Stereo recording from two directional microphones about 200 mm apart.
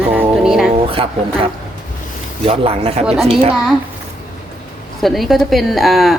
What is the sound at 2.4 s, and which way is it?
Speech, 30° right (ahead or behind).